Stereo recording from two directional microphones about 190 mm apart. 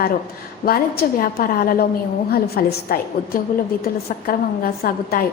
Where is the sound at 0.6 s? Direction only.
50° left (ahead or behind).